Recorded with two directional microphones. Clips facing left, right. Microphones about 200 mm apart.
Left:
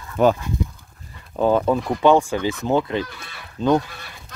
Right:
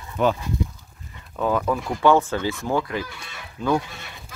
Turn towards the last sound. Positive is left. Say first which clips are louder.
# left 4 dB
turn(degrees=25)  # may be behind; listen again after turning